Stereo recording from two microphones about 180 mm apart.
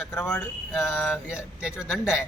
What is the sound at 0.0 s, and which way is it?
Speech, 15° left (ahead or behind).